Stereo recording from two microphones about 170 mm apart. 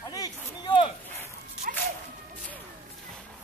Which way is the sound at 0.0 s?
20° left (ahead or behind).